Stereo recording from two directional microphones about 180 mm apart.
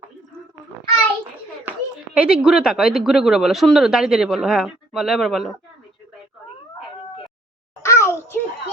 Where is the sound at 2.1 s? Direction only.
5° right (ahead or behind).